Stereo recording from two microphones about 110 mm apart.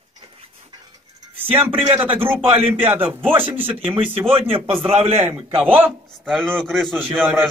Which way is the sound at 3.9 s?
55° right (ahead or behind).